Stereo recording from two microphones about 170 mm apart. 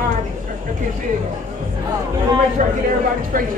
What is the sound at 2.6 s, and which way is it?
Speech, 50° right (ahead or behind).